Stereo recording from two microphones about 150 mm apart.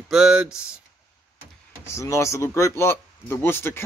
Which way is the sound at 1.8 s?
20° left (ahead or behind).